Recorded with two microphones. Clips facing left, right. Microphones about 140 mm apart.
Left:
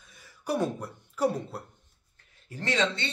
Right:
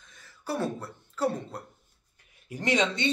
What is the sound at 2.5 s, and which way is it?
Speech, 15° right (ahead or behind).